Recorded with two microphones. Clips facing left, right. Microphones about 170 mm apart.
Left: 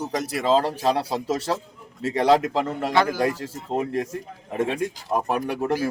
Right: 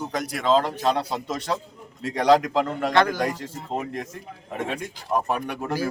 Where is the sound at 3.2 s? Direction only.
30° left (ahead or behind).